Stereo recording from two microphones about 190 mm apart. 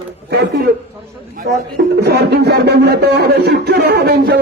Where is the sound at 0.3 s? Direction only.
60° right (ahead or behind).